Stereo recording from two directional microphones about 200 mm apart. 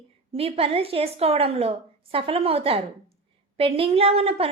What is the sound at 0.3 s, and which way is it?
A woman's voice, 30° right (ahead or behind).